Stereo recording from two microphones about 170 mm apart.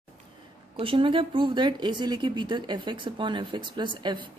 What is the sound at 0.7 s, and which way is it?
Speech, 30° right (ahead or behind).